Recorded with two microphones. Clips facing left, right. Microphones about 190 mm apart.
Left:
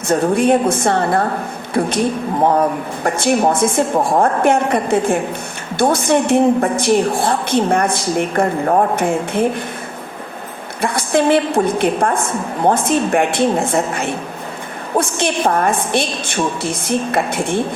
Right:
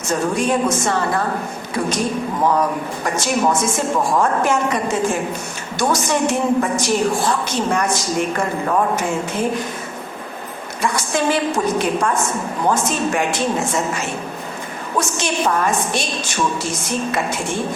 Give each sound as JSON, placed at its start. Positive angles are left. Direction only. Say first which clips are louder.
{"t": 0.1, "sound": "a woman's voice", "louder": "left 5 dB", "side_deg": 60}
{"t": 10.8, "sound": "a woman's voice", "louder": "left 4 dB", "side_deg": 55}